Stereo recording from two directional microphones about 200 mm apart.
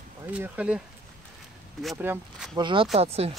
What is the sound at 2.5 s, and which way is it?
Speech, 25° right (ahead or behind).